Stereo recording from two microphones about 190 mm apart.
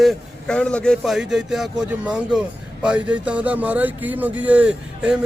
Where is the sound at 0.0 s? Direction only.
5° left (ahead or behind).